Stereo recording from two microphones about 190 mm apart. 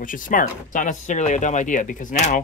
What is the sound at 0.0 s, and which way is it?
Speech, 45° left (ahead or behind).